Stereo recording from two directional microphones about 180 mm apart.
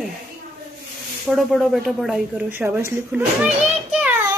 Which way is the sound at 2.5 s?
10° right (ahead or behind).